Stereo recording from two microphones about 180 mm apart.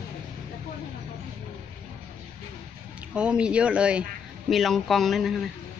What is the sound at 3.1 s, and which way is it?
Speech, 5° right (ahead or behind).